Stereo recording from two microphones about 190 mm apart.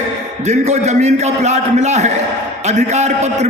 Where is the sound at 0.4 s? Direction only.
35° right (ahead or behind).